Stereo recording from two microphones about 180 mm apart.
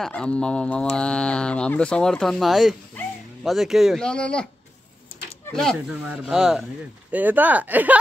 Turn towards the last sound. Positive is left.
turn(degrees=-10)  # may be behind; listen again after turning